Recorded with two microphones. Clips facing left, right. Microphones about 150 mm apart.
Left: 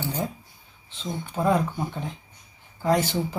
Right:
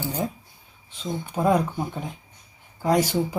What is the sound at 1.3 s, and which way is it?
Speech, 15° right (ahead or behind).